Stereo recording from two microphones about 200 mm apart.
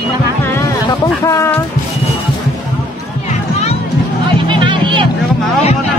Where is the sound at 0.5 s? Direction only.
15° left (ahead or behind).